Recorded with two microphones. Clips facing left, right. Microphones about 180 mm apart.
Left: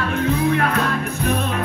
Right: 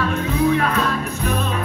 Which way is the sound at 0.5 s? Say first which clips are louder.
Even; 60° left (ahead or behind).